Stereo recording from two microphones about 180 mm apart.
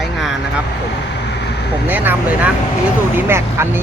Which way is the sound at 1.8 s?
10° right (ahead or behind).